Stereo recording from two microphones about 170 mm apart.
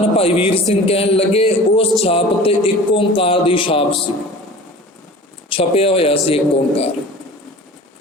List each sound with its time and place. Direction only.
0.0 s music: 35° left (ahead or behind)
5.5 s music: 35° left (ahead or behind)